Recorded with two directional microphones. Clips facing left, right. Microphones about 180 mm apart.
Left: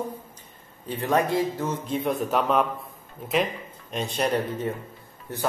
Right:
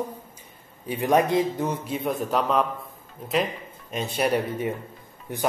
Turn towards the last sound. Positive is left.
turn(degrees=-15)  # may be behind; listen again after turning